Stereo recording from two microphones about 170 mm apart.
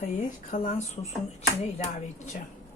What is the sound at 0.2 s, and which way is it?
Speech, 50° left (ahead or behind).